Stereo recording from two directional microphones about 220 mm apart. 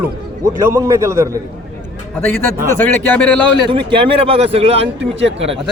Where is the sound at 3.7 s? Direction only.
20° right (ahead or behind).